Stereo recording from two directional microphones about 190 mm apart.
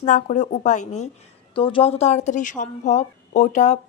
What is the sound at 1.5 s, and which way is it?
A woman's voice, 25° left (ahead or behind).